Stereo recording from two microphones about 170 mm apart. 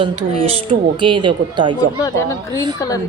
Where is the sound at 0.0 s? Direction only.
35° right (ahead or behind).